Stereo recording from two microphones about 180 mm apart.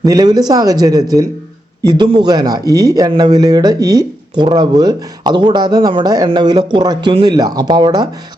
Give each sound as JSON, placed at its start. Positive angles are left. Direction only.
{"t": 0.0, "sound": "speech", "side_deg": -20}